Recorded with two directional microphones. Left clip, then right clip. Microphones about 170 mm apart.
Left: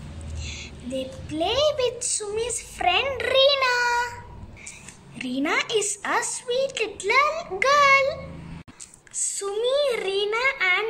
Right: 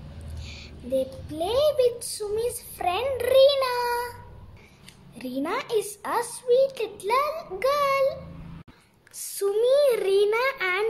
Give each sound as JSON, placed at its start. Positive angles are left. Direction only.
{"t": 0.4, "sound": "a sound", "side_deg": -50}
{"t": 1.3, "sound": "speech", "side_deg": -45}
{"t": 5.1, "sound": "speech", "side_deg": -40}
{"t": 9.4, "sound": "speech", "side_deg": -55}